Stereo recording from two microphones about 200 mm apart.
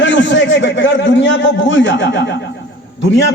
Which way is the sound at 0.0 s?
65° left (ahead or behind).